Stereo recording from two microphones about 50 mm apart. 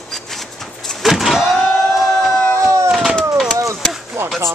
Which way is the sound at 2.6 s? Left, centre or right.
Right.